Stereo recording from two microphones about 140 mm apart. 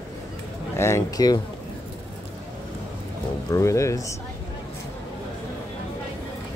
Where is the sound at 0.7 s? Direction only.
20° left (ahead or behind).